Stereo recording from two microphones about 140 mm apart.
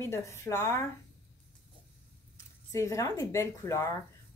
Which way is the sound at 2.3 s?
20° left (ahead or behind).